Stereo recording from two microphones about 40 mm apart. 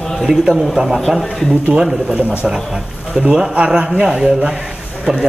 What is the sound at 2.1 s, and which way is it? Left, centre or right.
A man's voice, right.